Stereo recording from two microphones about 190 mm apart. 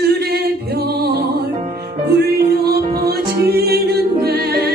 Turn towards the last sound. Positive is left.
turn(degrees=-55)  # may be behind; listen again after turning